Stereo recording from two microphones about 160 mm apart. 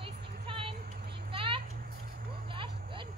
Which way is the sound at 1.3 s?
35° right (ahead or behind).